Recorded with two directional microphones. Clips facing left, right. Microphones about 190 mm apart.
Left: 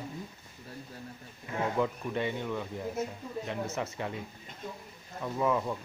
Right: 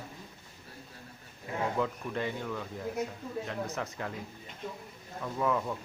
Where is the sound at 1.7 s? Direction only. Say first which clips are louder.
Left 2 dB; 10° left (ahead or behind).